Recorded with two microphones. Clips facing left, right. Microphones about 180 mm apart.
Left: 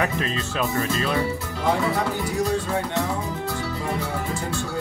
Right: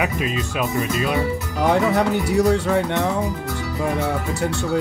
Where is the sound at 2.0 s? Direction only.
70° right (ahead or behind).